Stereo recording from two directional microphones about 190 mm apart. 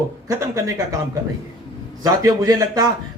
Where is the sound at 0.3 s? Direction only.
15° right (ahead or behind).